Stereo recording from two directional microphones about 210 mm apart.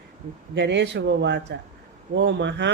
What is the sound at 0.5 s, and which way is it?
A woman's voice, 55° right (ahead or behind).